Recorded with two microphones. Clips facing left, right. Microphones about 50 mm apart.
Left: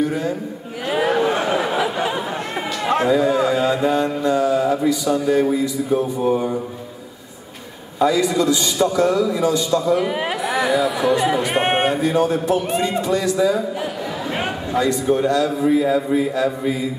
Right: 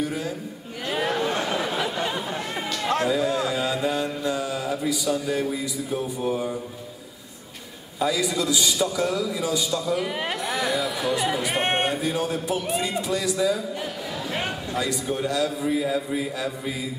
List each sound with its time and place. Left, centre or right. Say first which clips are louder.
0.0 s a man's voice: left 7 dB; centre
0.8 s a sound: left 7 dB; centre
2.8 s mantra: left 6 dB; centre
4.8 s mantra: left 7 dB; centre
8.2 s a man's voice: left 6 dB; centre
9.4 s a man's voice: left 7 dB; centre
9.7 s mantra: left 7 dB; centre
12.4 s a man's voice: left 7 dB; centre
14.3 s a sound: left 5 dB; centre
14.8 s a man's voice: left 9 dB; centre
15.7 s mantra: left 8 dB; centre